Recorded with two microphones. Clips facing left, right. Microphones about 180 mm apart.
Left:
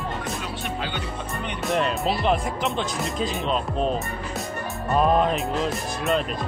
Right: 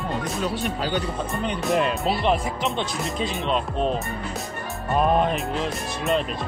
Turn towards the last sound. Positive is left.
turn(degrees=-5)  # may be behind; listen again after turning